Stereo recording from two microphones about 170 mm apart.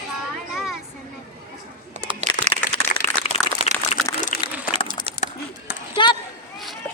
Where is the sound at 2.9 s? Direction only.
50° left (ahead or behind).